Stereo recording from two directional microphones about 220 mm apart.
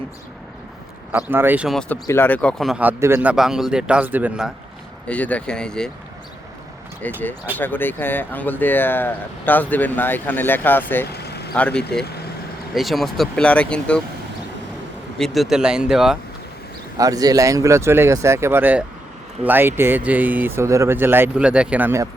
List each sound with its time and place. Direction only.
1.1 s speech: 10° right (ahead or behind)
5.0 s speech: 5° left (ahead or behind)
7.0 s speech: 5° left (ahead or behind)
11.1 s vehicle: 45° left (ahead or behind)
11.5 s speech: 5° left (ahead or behind)
15.2 s speech: centre (ahead or behind)
17.0 s speech: 15° right (ahead or behind)